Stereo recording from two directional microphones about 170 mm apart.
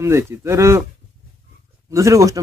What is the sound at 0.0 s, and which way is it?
Speech, 15° right (ahead or behind).